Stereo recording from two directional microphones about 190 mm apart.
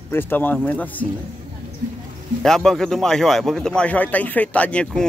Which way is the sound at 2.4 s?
Centre (ahead or behind).